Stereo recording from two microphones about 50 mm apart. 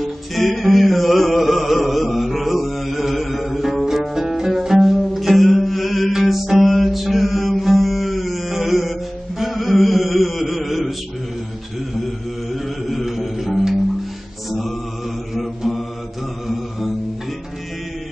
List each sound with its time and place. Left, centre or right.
0.0 s music: centre
3.8 s music: centre
9.4 s chant: centre
12.6 s music: centre
15.3 s mantra: centre